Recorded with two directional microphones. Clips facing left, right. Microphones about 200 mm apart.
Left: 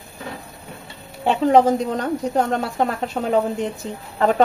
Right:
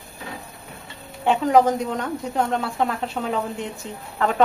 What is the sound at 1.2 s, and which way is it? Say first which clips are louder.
Speech: left 2 dB; 30° left (ahead or behind).